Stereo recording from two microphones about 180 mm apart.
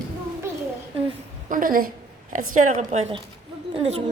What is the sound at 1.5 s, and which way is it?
A woman's voice, 50° right (ahead or behind).